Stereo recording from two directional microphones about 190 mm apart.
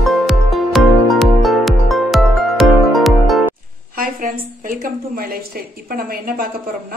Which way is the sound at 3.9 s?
45° right (ahead or behind).